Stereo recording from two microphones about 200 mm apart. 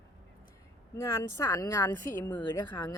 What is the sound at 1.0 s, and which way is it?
A woman's voice, 15° left (ahead or behind).